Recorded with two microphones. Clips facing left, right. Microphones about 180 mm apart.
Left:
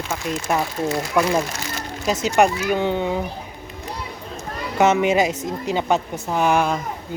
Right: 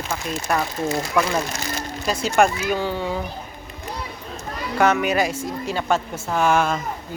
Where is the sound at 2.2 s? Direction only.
15° left (ahead or behind).